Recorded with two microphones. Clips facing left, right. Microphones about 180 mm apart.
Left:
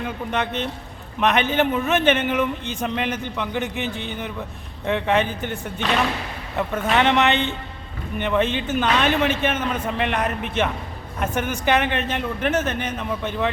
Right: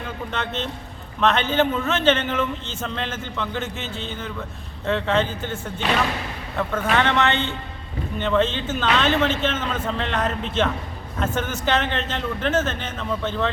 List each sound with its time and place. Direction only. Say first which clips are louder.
0.3 s a man's voice: left 3 dB; 15° left (ahead or behind)
6.6 s a man's voice: left 1 dB; 15° left (ahead or behind)